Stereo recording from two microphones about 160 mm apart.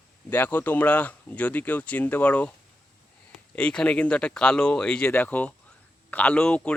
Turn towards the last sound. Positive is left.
turn(degrees=5)  # may be behind; listen again after turning